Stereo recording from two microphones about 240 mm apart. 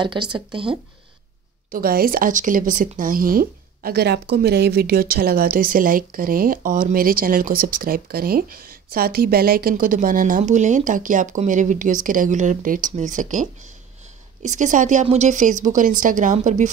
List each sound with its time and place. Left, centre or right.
0.0 s speech: centre
1.7 s speech: right